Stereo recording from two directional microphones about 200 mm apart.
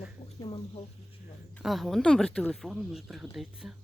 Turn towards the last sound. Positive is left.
turn(degrees=0)  # may be behind; listen again after turning